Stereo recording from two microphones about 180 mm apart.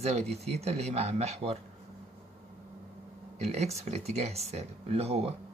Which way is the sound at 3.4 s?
40° right (ahead or behind).